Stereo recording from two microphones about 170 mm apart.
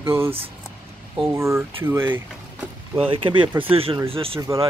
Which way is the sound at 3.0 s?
30° right (ahead or behind).